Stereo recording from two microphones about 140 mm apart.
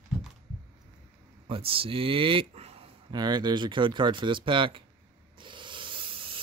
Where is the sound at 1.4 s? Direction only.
40° right (ahead or behind).